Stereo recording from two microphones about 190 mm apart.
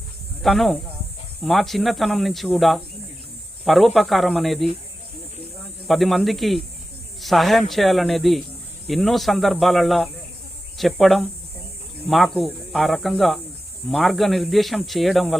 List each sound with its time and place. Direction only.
0.4 s speech: centre (ahead or behind)
5.9 s speech: centre (ahead or behind)